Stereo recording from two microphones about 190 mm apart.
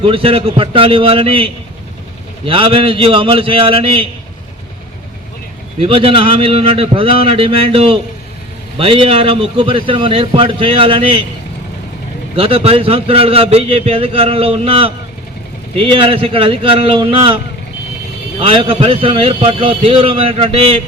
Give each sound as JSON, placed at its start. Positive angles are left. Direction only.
{"t": 0.0, "sound": "a man's voice", "side_deg": -30}
{"t": 5.8, "sound": "a man's voice", "side_deg": -30}
{"t": 12.4, "sound": "a man's voice", "side_deg": -30}